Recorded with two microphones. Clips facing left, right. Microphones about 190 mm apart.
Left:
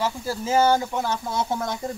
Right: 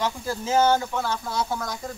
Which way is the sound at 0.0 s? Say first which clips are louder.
Left 1 dB; 5° left (ahead or behind).